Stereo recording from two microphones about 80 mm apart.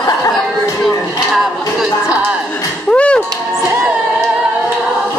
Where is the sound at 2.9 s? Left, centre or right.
Centre.